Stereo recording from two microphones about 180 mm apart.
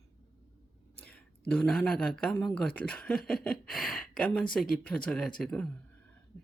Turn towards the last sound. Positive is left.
turn(degrees=5)  # may be behind; listen again after turning